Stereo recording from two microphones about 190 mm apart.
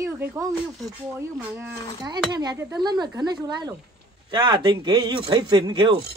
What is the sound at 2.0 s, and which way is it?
A man's voice, 20° right (ahead or behind).